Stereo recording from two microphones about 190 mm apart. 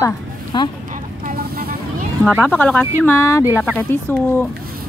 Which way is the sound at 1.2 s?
50° right (ahead or behind).